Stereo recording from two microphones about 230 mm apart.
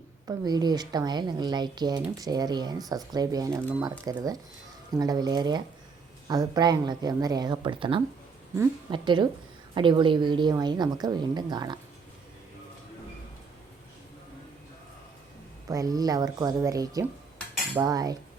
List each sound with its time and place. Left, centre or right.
0.3 s a woman's voice: centre
15.7 s speech: centre